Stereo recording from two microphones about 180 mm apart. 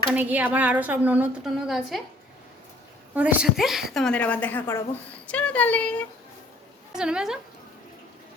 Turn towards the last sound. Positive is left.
turn(degrees=-5)  # may be behind; listen again after turning